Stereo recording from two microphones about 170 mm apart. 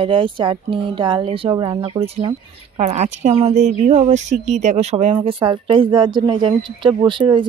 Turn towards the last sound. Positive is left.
turn(degrees=-30)  # may be behind; listen again after turning